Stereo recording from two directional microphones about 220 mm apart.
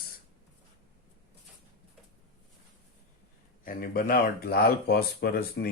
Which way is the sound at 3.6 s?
40° left (ahead or behind).